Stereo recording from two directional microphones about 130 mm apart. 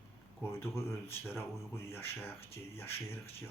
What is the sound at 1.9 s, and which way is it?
Speech, 20° left (ahead or behind).